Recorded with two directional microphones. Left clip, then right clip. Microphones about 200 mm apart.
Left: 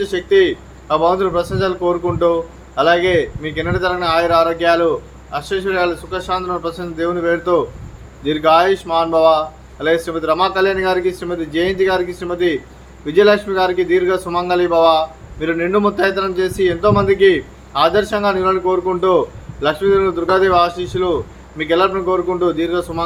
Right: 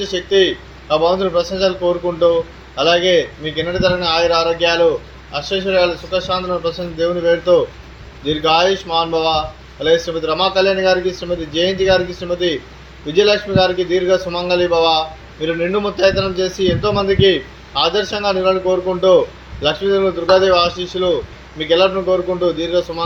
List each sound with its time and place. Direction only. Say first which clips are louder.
0.3 s a man's voice: left 1 dB; 20° left (ahead or behind)